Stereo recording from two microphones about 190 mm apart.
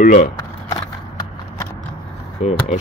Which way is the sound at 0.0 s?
45° left (ahead or behind).